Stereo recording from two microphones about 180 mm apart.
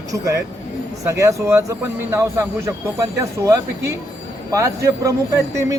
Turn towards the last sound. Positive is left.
turn(degrees=-15)  # may be behind; listen again after turning